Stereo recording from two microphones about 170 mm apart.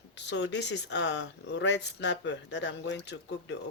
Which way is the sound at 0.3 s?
90° left.